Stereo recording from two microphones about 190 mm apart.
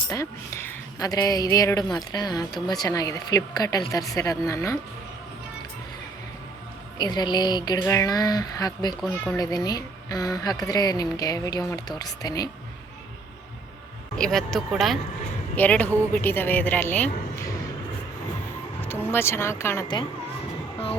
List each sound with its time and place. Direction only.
0.1 s speech: 15° left (ahead or behind)
7.0 s speech: 20° left (ahead or behind)
9.0 s speech: 5° left (ahead or behind)
9.4 s speech: 20° left (ahead or behind)
14.2 s speech: centre (ahead or behind)
18.8 s speech: 10° left (ahead or behind)